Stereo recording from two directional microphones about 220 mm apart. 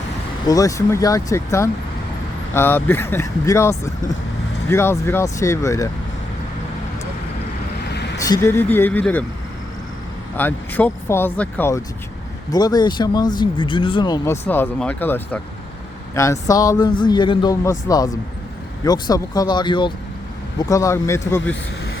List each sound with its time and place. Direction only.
0.4 s speech: 15° left (ahead or behind)
8.2 s speech: 15° left (ahead or behind)
10.3 s speech: 10° left (ahead or behind)